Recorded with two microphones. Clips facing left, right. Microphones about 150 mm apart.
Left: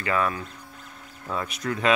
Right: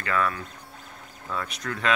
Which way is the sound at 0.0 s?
20° left (ahead or behind).